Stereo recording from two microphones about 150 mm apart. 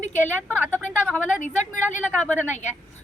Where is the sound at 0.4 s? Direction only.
10° left (ahead or behind).